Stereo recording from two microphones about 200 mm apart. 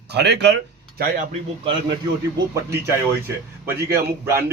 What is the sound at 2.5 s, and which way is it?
Speech, 15° right (ahead or behind).